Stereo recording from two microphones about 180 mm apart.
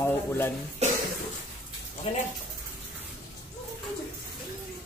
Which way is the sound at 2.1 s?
35° left (ahead or behind).